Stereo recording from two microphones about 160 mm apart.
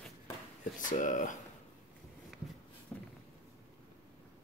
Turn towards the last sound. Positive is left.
turn(degrees=0)  # may be behind; listen again after turning